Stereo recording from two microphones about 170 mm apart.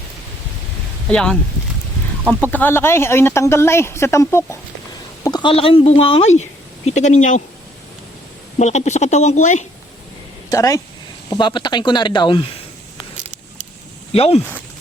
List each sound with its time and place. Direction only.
1.0 s speech: 5° left (ahead or behind); by 6.3 s 35° left (ahead or behind)
6.8 s speech: 45° left (ahead or behind)
8.5 s speech: 40° left (ahead or behind)
10.5 s speech: 20° left (ahead or behind)
14.1 s speech: 35° left (ahead or behind)